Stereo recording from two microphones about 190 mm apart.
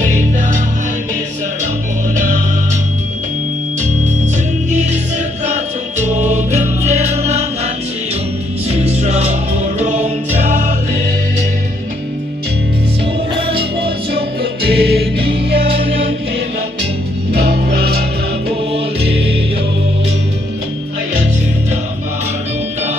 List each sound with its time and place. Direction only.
2.1 s music: 40° right (ahead or behind)
5.5 s music: 35° right (ahead or behind)
13.5 s music: 30° right (ahead or behind)
14.1 s music: 55° right (ahead or behind)
17.3 s music: 55° right (ahead or behind)